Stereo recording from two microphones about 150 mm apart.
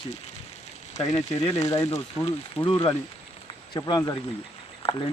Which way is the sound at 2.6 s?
30° left (ahead or behind).